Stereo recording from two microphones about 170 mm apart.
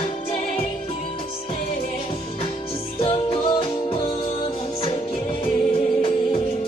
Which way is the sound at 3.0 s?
35° left (ahead or behind).